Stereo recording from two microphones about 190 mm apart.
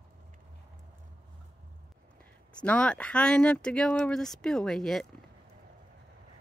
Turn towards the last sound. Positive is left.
turn(degrees=5)  # may be behind; listen again after turning